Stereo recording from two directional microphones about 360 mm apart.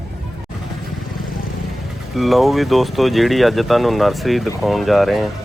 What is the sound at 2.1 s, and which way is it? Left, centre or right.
Speech, centre.